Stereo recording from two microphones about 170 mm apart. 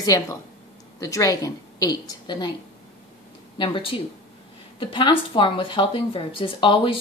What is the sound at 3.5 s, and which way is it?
Speech, 30° left (ahead or behind).